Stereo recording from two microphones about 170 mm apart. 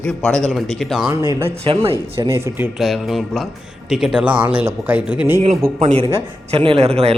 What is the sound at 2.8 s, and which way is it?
A man's voice, centre (ahead or behind).